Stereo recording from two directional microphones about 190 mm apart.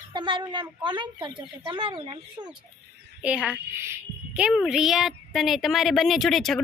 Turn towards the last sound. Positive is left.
turn(degrees=0)  # may be behind; listen again after turning